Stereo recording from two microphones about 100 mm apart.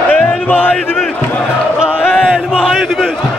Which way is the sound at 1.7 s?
10° right (ahead or behind).